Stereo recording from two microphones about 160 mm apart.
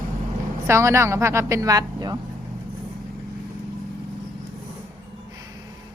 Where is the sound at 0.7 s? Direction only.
15° right (ahead or behind).